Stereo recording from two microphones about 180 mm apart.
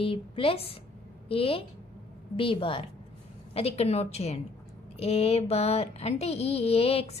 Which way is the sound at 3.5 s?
35° left (ahead or behind).